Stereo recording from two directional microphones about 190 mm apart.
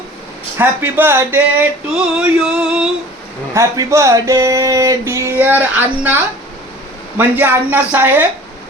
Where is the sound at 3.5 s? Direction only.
15° right (ahead or behind).